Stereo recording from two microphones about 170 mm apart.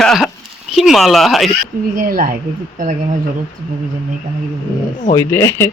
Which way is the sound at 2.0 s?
55° right (ahead or behind).